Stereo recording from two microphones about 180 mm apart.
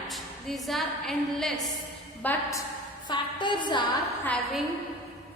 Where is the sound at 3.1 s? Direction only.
25° left (ahead or behind).